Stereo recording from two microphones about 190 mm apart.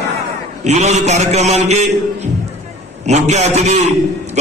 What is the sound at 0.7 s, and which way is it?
A man's voice, 35° right (ahead or behind).